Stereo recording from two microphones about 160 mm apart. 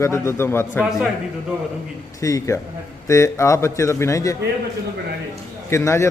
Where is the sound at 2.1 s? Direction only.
20° left (ahead or behind).